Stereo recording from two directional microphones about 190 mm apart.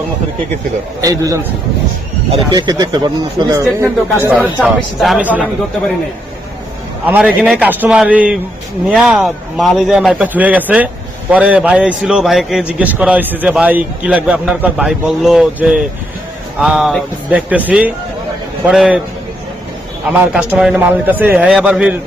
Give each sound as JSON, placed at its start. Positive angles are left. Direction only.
{"t": 1.0, "sound": "a man's voice", "side_deg": -15}
{"t": 3.8, "sound": "a man's voice", "side_deg": -15}
{"t": 4.4, "sound": "a man's voice", "side_deg": 5}
{"t": 7.0, "sound": "a man's voice", "side_deg": -5}
{"t": 20.1, "sound": "a man's voice", "side_deg": -5}